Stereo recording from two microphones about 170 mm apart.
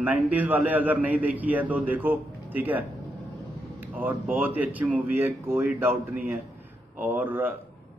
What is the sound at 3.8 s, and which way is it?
Speech, 10° right (ahead or behind).